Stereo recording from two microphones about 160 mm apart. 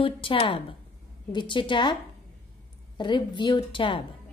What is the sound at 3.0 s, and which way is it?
A woman's voice, 30° left (ahead or behind).